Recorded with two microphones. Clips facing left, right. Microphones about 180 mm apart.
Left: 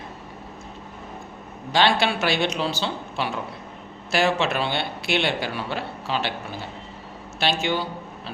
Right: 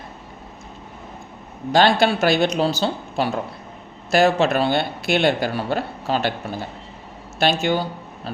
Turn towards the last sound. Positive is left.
turn(degrees=-45)  # may be behind; listen again after turning